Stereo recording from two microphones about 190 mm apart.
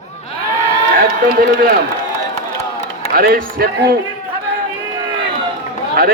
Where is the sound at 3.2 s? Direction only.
50° right (ahead or behind).